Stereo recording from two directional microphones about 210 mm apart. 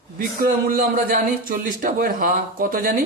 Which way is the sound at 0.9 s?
40° right (ahead or behind).